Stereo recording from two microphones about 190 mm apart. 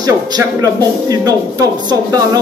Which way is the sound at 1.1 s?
20° right (ahead or behind).